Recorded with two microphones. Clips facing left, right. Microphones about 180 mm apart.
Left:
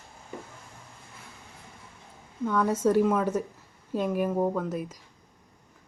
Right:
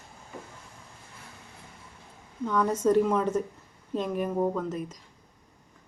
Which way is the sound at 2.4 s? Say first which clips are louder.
Left 1 dB; 5° left (ahead or behind).